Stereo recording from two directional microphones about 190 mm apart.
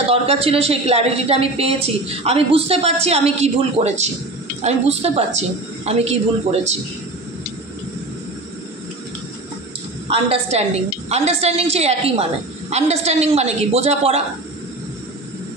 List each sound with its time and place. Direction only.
0.1 s speech: 30° right (ahead or behind)
10.0 s a woman's voice: 30° right (ahead or behind)